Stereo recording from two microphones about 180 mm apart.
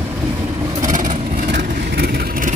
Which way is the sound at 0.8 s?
45° right (ahead or behind).